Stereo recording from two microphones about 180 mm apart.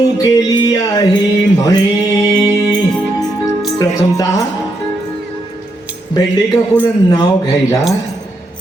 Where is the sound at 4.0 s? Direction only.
20° left (ahead or behind).